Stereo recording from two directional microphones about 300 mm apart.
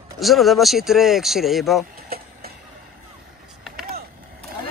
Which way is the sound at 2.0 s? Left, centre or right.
Right.